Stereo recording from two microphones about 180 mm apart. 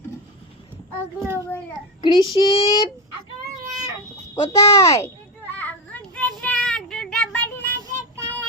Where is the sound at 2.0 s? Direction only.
25° left (ahead or behind).